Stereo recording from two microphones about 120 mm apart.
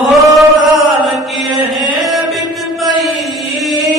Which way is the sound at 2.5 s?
Centre (ahead or behind).